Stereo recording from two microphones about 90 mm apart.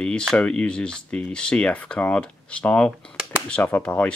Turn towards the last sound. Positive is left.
turn(degrees=15)  # may be behind; listen again after turning